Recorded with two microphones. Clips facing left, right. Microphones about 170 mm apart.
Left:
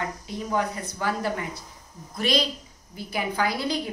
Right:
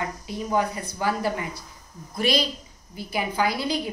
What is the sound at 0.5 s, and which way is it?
A woman's voice, 5° right (ahead or behind).